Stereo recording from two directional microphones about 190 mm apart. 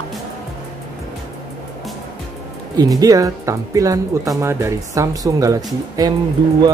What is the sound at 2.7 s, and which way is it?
Speech, 20° right (ahead or behind).